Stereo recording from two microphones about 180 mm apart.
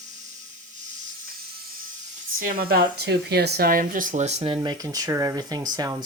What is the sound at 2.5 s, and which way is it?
Speech, 55° right (ahead or behind).